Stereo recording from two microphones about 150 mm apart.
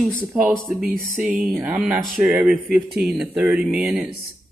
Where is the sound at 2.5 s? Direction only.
90° right.